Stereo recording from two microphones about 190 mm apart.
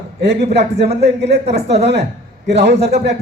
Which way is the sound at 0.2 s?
65° right (ahead or behind).